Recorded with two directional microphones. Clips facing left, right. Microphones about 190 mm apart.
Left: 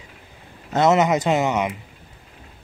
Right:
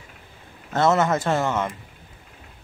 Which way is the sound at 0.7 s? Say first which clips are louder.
Left 3 dB; 15° left (ahead or behind).